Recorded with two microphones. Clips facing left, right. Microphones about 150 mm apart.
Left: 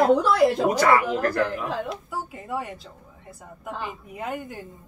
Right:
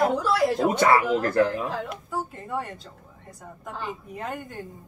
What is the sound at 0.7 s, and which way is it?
Speech, 25° right (ahead or behind).